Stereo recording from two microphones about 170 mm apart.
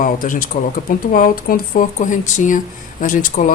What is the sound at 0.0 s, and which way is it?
Speech, 55° left (ahead or behind).